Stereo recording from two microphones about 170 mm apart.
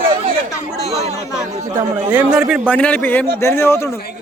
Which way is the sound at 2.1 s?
10° right (ahead or behind).